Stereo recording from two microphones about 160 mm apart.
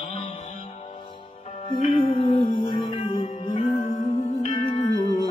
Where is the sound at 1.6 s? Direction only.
35° left (ahead or behind).